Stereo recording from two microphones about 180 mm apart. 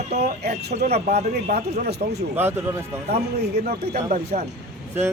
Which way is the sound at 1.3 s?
60° right (ahead or behind).